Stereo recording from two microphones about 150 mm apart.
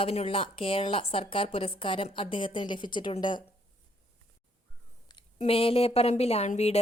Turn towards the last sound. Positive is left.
turn(degrees=45)  # may be behind; listen again after turning